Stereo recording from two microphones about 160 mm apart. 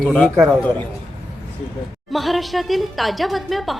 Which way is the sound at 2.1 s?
Centre (ahead or behind).